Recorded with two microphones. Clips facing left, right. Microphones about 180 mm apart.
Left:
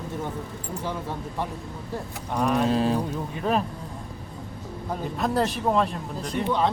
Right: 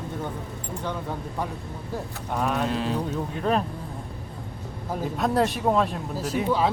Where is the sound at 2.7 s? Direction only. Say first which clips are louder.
Left 4 dB; 35° left (ahead or behind).